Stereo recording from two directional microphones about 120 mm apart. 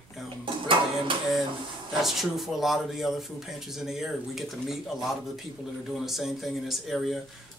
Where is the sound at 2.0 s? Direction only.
Centre (ahead or behind).